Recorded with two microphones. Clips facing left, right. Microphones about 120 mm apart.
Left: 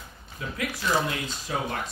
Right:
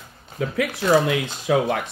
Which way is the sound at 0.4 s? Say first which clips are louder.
Right 8 dB; 60° right (ahead or behind).